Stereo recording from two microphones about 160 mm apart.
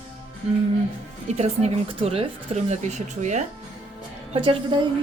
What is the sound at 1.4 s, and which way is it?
Speech, 40° right (ahead or behind).